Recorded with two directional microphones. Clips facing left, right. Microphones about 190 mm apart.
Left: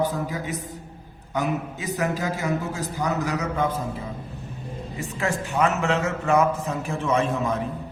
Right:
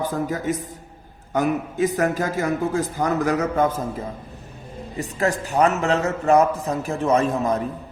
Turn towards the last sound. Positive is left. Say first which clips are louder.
# right 3 dB
turn(degrees=-40)  # may be behind; listen again after turning